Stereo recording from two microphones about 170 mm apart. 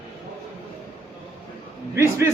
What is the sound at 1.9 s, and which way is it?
Speech, 15° right (ahead or behind).